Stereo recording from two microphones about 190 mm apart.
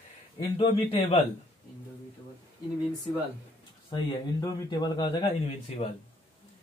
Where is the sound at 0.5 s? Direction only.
30° left (ahead or behind).